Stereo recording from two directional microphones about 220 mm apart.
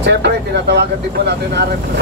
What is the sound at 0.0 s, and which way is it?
Speech, 50° right (ahead or behind).